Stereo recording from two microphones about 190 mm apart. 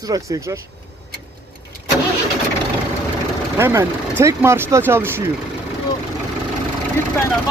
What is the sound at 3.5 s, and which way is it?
Speech, 10° right (ahead or behind).